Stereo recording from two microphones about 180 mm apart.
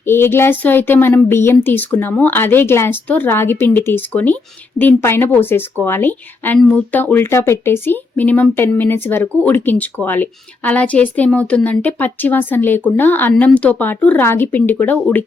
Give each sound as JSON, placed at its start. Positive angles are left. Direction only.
{"t": 0.0, "sound": "speech", "side_deg": 15}